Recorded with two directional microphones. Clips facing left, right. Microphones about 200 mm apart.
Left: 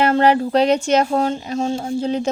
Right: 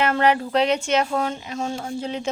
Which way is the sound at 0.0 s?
35° left (ahead or behind).